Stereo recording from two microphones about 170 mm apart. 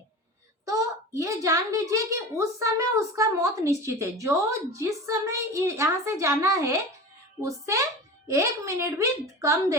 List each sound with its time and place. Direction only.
0.6 s a woman's voice: 20° right (ahead or behind)